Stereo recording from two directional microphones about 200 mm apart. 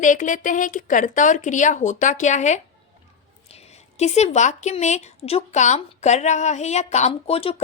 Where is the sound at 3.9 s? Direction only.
35° left (ahead or behind).